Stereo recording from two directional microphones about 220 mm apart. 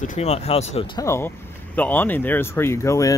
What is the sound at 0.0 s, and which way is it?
Speech, 30° left (ahead or behind).